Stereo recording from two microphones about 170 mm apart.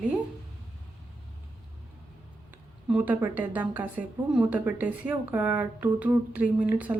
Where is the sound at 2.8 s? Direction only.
10° right (ahead or behind).